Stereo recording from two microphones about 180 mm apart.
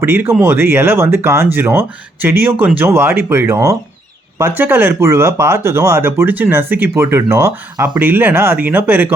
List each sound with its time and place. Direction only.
0.0 s speech: 10° right (ahead or behind)